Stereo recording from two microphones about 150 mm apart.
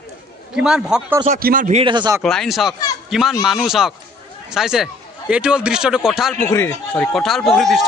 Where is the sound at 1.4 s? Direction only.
70° right (ahead or behind).